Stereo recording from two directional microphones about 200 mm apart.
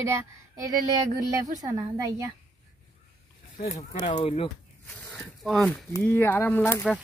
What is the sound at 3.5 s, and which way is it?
Speech, 35° left (ahead or behind).